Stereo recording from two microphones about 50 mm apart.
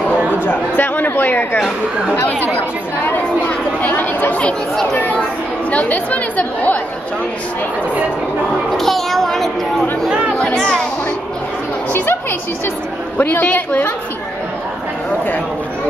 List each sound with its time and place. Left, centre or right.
0.4 s chatter: left
3.8 s chatter: left
5.7 s speech: left
8.7 s a child's voice: centre
10.3 s speech: centre
11.9 s a woman's voice: left